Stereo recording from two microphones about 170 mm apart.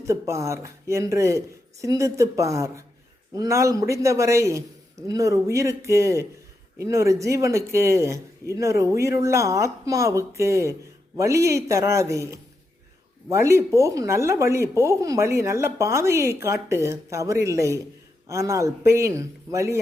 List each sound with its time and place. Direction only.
0.0 s speech: 15° right (ahead or behind)